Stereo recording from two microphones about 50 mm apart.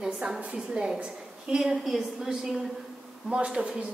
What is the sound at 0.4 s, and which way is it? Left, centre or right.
Speech, right.